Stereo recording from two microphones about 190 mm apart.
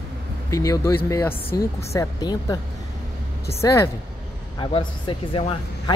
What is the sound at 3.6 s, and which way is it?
Speech, 15° left (ahead or behind).